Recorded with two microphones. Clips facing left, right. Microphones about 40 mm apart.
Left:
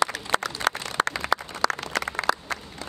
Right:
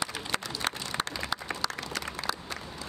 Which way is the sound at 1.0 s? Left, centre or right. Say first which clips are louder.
Left 8 dB; left.